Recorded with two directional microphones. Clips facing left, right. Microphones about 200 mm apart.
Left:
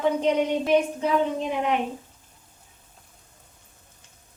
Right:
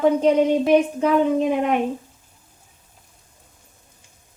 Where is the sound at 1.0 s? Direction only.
55° right (ahead or behind).